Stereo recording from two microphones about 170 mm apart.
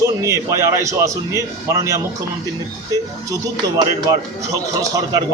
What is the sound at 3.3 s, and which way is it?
A man's voice, 25° right (ahead or behind).